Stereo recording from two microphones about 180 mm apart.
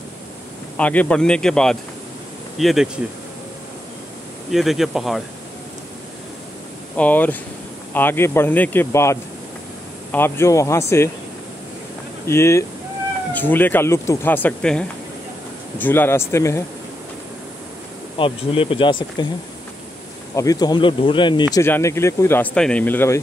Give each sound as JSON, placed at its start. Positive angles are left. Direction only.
{"t": 0.7, "sound": "a man's voice", "side_deg": 5}
{"t": 4.5, "sound": "a man's voice", "side_deg": 0}
{"t": 7.0, "sound": "speech", "side_deg": 10}
{"t": 12.3, "sound": "speech", "side_deg": 15}
{"t": 18.1, "sound": "speech", "side_deg": 30}
{"t": 20.3, "sound": "speech", "side_deg": 20}
{"t": 21.5, "sound": "speech", "side_deg": 15}